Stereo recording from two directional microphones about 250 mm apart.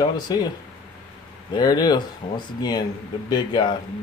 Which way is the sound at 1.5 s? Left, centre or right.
Centre.